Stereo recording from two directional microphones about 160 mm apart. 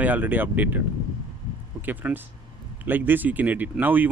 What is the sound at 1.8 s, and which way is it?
Speech, 10° right (ahead or behind).